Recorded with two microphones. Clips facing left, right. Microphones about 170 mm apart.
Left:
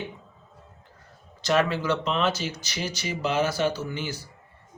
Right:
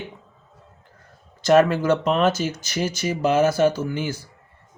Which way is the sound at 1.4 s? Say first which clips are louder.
Right 7 dB; 50° right (ahead or behind).